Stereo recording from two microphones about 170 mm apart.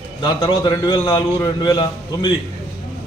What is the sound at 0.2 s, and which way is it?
A man's voice, 25° left (ahead or behind).